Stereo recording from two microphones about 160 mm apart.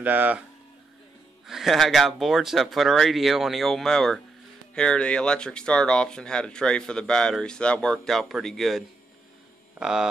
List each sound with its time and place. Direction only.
0.0 s speech: 10° right (ahead or behind)
1.5 s speech: centre (ahead or behind)